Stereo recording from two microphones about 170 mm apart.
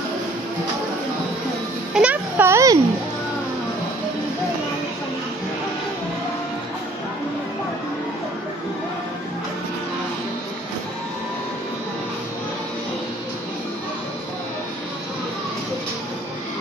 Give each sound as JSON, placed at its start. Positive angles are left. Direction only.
{"t": 2.0, "sound": "music", "side_deg": -10}